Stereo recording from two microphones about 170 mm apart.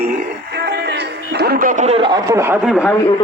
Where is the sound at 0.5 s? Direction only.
75° right (ahead or behind); by 2.1 s 40° right (ahead or behind).